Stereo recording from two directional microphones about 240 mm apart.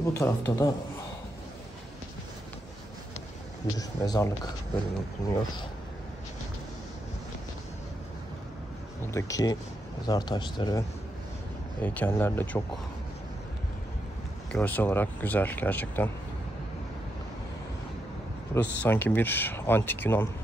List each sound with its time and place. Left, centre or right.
0.0 s speech: centre
3.7 s speech: centre
9.1 s speech: centre
14.5 s speech: centre
18.5 s speech: centre